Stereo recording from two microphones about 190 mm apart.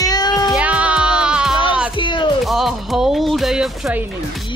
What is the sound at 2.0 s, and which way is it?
Speech, 25° left (ahead or behind).